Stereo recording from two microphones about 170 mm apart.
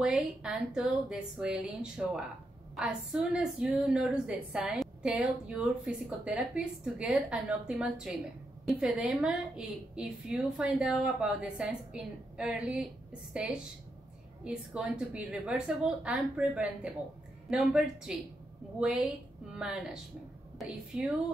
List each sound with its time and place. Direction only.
0.0 s a woman's voice: 5° right (ahead or behind)